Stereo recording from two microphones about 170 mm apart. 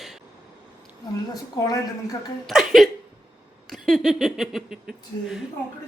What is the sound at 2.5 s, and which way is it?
Speech, centre (ahead or behind).